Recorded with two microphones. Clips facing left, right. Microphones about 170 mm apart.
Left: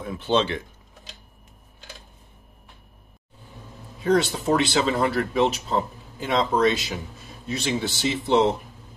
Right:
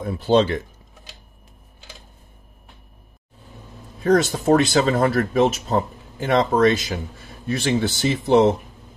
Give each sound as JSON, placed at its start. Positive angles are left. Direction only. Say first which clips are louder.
{"t": 0.0, "sound": "speech", "louder": "right 5 dB", "side_deg": -40}
{"t": 4.0, "sound": "speech", "louder": "right 3 dB", "side_deg": -45}